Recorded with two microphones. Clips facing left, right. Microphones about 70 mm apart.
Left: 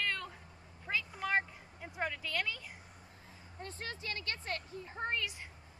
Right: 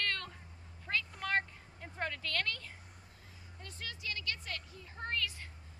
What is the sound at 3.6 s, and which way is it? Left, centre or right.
Speech, left.